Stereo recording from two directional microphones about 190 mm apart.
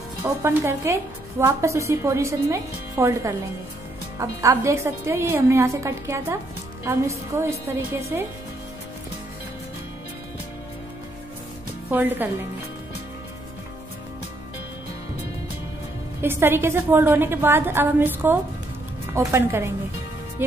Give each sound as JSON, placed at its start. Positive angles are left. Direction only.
{"t": 0.2, "sound": "a woman's voice", "side_deg": -15}
{"t": 11.9, "sound": "a woman's voice", "side_deg": -10}
{"t": 16.2, "sound": "a woman's voice", "side_deg": -10}